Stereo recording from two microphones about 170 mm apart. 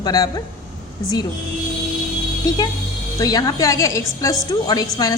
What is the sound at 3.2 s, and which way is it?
A woman's voice, 20° left (ahead or behind).